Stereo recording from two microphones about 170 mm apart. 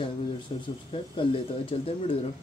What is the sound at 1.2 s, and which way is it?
Speech, 30° left (ahead or behind).